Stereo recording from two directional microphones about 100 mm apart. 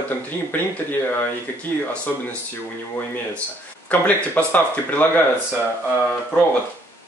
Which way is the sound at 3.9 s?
15° left (ahead or behind).